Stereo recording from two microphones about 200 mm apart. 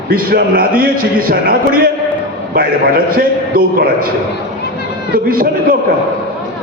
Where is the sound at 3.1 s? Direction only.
45° right (ahead or behind).